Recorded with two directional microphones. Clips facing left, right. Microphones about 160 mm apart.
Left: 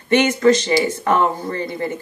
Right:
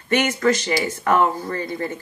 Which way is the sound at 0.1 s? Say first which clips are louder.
Left 5 dB; 20° left (ahead or behind).